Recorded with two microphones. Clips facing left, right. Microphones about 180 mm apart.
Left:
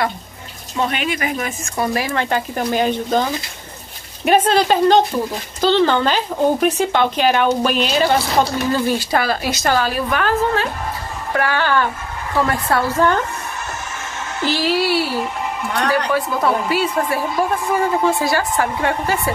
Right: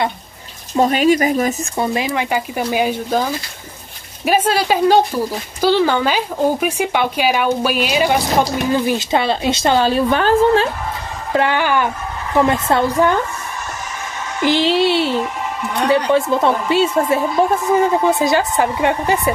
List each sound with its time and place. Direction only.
0.7 s speech: 40° right (ahead or behind)
1.8 s speech: 20° right (ahead or behind)
11.3 s a woman's voice: 20° right (ahead or behind)
14.4 s a woman's voice: 20° right (ahead or behind)